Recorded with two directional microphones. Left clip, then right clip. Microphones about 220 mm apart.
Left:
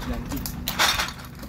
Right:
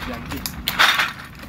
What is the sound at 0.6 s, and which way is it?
Breaking, 25° left (ahead or behind).